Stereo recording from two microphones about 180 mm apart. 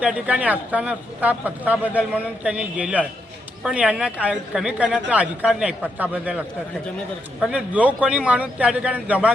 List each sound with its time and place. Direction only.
0.0 s speech: 5° right (ahead or behind)